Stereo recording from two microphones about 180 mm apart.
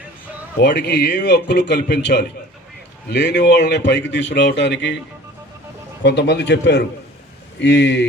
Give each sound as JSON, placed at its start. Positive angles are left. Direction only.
{"t": 0.6, "sound": "a man's voice", "side_deg": 70}
{"t": 6.0, "sound": "a man's voice", "side_deg": 75}